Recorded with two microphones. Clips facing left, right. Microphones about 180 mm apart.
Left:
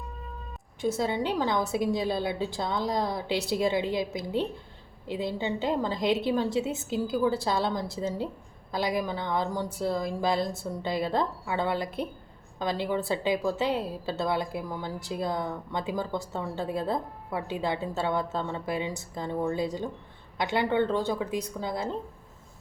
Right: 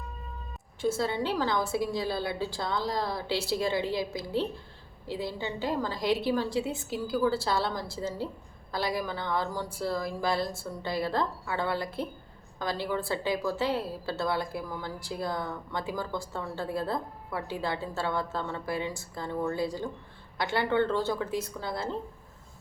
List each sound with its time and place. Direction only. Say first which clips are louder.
0.8 s a woman's voice: left 1 dB; 15° left (ahead or behind)